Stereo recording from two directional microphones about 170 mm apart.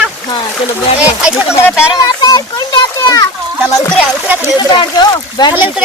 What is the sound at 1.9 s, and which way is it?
Children playing, 25° left (ahead or behind).